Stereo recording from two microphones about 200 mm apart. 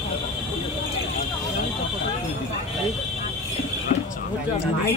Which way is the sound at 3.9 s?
35° left (ahead or behind).